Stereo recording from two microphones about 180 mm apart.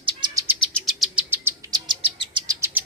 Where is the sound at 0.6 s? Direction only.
Centre (ahead or behind).